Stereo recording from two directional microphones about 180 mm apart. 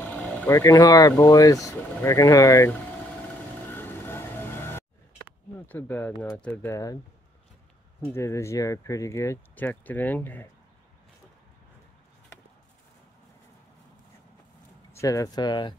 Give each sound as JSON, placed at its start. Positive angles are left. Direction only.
{"t": 0.0, "sound": "speech", "side_deg": 10}
{"t": 3.7, "sound": "music", "side_deg": 10}
{"t": 5.7, "sound": "speech", "side_deg": 10}
{"t": 8.1, "sound": "speech", "side_deg": 15}
{"t": 14.9, "sound": "speech", "side_deg": 15}